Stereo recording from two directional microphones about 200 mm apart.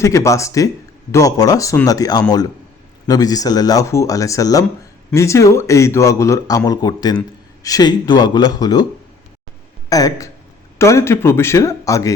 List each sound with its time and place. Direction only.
0.0 s speech: 15° left (ahead or behind)
9.9 s speech: 15° left (ahead or behind)